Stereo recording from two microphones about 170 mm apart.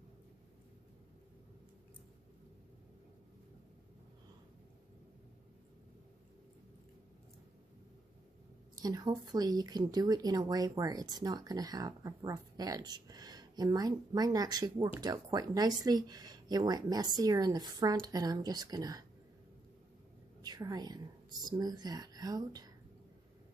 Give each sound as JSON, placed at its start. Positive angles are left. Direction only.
{"t": 8.7, "sound": "speech", "side_deg": -20}
{"t": 20.4, "sound": "speech", "side_deg": -25}